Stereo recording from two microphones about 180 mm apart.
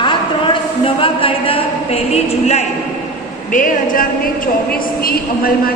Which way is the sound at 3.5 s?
50° left (ahead or behind).